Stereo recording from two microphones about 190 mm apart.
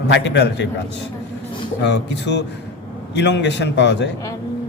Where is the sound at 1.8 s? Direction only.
65° left (ahead or behind).